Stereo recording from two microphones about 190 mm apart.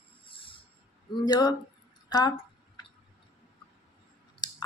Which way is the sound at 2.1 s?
20° left (ahead or behind).